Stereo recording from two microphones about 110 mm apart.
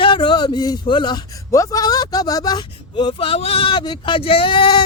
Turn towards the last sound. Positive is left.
turn(degrees=45)  # may be behind; listen again after turning